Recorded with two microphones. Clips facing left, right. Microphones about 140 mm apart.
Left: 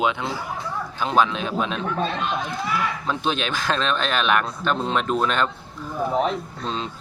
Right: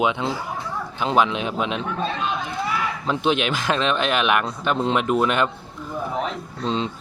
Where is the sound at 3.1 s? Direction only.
15° right (ahead or behind).